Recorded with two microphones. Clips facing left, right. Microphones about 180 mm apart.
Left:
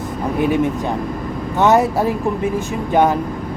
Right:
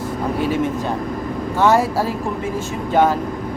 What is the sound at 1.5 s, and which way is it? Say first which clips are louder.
Speech: left 2 dB; 20° left (ahead or behind).